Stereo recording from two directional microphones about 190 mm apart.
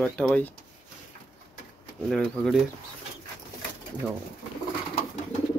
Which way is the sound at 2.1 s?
Centre (ahead or behind).